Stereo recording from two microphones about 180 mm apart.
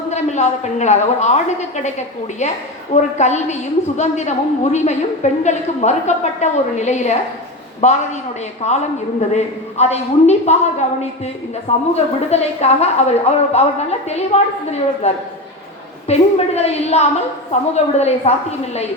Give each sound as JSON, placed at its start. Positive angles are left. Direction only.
{"t": 0.1, "sound": "a woman's voice", "side_deg": 40}
{"t": 11.9, "sound": "a woman's voice", "side_deg": 35}